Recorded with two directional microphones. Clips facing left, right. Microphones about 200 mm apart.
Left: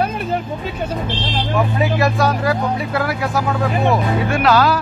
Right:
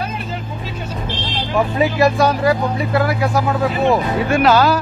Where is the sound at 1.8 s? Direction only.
Centre (ahead or behind).